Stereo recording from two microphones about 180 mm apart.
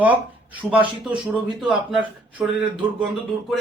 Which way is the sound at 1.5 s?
25° right (ahead or behind).